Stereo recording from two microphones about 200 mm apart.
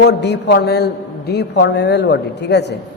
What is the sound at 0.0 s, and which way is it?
A man's voice, 60° left (ahead or behind).